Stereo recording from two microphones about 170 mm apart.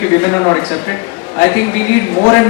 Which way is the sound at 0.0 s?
15° left (ahead or behind).